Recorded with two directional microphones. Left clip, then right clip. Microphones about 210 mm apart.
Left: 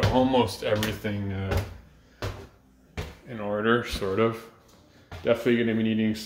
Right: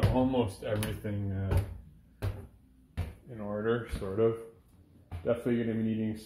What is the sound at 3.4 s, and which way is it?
Speech, 30° left (ahead or behind).